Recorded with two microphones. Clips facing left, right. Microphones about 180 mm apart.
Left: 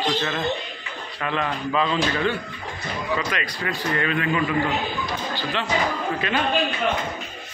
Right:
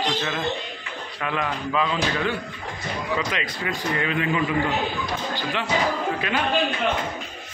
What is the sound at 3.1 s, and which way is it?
A man's voice, 25° right (ahead or behind).